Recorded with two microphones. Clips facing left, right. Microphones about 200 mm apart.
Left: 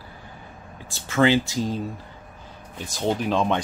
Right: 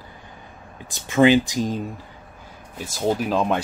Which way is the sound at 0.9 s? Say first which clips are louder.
Right 4 dB; 15° right (ahead or behind).